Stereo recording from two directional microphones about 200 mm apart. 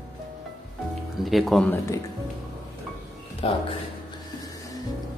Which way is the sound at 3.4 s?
30° left (ahead or behind).